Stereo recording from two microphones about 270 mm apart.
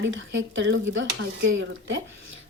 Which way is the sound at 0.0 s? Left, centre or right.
Right.